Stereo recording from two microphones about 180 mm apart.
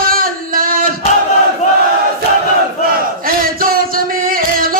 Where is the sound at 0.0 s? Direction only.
50° right (ahead or behind).